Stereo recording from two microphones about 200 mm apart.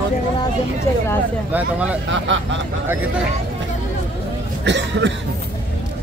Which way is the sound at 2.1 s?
65° right (ahead or behind).